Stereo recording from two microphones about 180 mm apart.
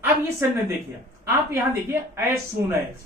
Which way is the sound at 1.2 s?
15° right (ahead or behind).